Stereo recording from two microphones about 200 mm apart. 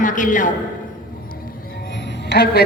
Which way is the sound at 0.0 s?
40° left (ahead or behind).